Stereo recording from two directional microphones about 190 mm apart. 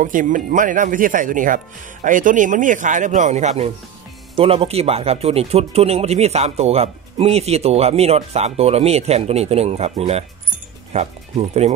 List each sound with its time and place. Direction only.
0.0 s speech: 45° right (ahead or behind)